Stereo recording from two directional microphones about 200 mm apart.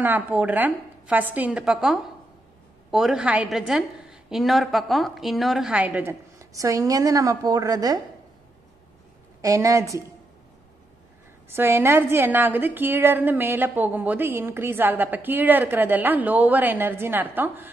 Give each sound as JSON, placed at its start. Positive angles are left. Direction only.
{"t": 0.0, "sound": "a woman's voice", "side_deg": -10}
{"t": 9.4, "sound": "a woman's voice", "side_deg": -15}
{"t": 11.4, "sound": "a woman's voice", "side_deg": -10}